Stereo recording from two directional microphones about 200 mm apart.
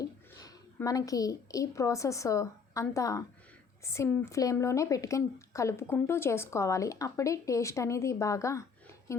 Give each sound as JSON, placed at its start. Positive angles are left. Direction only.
{"t": 0.0, "sound": "a woman's voice", "side_deg": 20}